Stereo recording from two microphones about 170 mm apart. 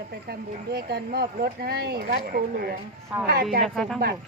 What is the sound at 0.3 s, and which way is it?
Speech, 70° right (ahead or behind).